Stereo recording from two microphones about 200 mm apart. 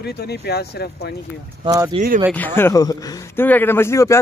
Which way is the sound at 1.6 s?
20° right (ahead or behind).